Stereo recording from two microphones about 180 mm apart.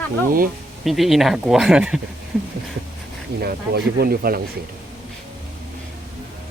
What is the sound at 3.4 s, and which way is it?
Speech, 60° right (ahead or behind).